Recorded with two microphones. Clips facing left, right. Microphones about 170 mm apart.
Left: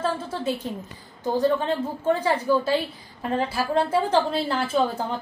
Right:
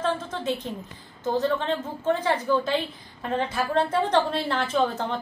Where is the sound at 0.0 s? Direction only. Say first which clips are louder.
Left 1 dB; 10° left (ahead or behind).